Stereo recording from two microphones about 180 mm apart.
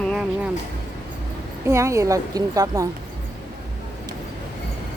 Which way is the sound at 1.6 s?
15° right (ahead or behind).